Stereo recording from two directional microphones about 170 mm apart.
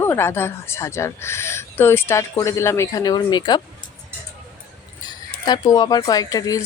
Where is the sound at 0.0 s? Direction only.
15° left (ahead or behind).